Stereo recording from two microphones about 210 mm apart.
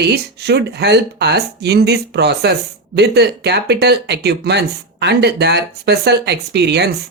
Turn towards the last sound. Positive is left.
turn(degrees=-50)  # may be behind; listen again after turning